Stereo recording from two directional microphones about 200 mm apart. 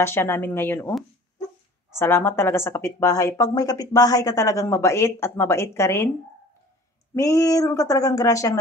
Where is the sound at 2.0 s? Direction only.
15° left (ahead or behind).